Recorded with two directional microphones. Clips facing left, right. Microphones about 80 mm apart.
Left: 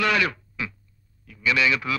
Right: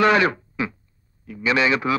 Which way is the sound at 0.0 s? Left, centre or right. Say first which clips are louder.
Right 6 dB; right.